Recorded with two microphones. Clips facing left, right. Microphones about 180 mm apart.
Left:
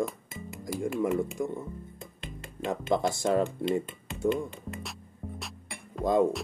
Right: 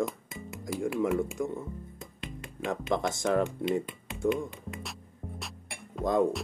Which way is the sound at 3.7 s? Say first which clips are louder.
Left 1 dB; centre (ahead or behind).